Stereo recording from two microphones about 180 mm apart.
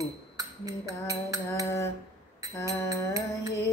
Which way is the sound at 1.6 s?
15° left (ahead or behind).